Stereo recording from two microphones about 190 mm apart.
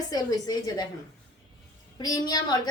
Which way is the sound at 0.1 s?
20° left (ahead or behind).